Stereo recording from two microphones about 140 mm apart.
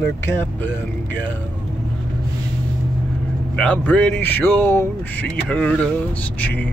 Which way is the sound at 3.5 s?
10° left (ahead or behind).